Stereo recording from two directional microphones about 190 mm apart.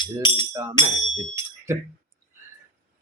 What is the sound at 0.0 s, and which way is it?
Speech, 25° left (ahead or behind).